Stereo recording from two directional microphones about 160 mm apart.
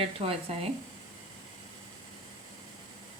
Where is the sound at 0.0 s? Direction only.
35° right (ahead or behind).